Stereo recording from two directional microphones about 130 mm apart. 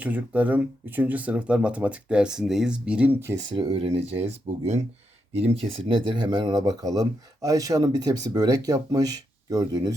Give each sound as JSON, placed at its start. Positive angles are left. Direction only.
{"t": 0.0, "sound": "speech", "side_deg": -10}
{"t": 3.5, "sound": "speech", "side_deg": -45}
{"t": 5.4, "sound": "speech", "side_deg": -45}